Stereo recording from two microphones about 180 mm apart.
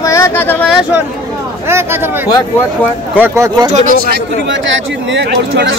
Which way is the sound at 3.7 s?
40° right (ahead or behind).